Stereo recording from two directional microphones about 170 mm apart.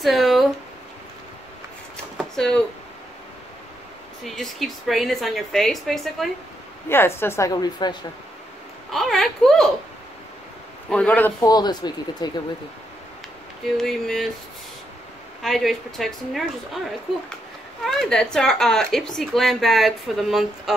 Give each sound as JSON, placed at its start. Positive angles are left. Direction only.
{"t": 0.0, "sound": "a sound", "side_deg": 0}
{"t": 2.1, "sound": "a sound", "side_deg": 5}
{"t": 4.2, "sound": "speech", "side_deg": 0}
{"t": 6.9, "sound": "a woman's voice", "side_deg": 15}
{"t": 8.9, "sound": "speech", "side_deg": 0}
{"t": 10.9, "sound": "a woman's voice", "side_deg": 5}
{"t": 11.4, "sound": "speech", "side_deg": 25}
{"t": 13.7, "sound": "speech", "side_deg": 0}
{"t": 15.4, "sound": "speech", "side_deg": 0}
{"t": 17.8, "sound": "speech", "side_deg": 0}